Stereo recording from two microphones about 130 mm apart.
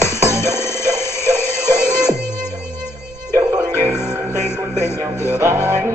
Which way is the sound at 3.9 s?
20° left (ahead or behind).